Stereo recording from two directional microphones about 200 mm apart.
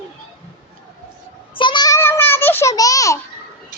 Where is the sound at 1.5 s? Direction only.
25° left (ahead or behind).